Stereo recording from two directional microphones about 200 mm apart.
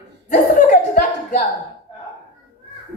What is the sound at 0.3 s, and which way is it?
Chuckle, 40° left (ahead or behind).